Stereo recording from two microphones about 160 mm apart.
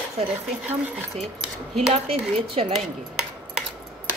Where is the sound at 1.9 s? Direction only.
40° right (ahead or behind).